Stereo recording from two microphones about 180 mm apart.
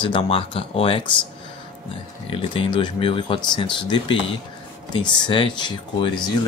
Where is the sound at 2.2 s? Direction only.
30° left (ahead or behind).